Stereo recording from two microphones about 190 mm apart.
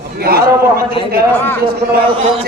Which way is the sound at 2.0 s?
25° right (ahead or behind).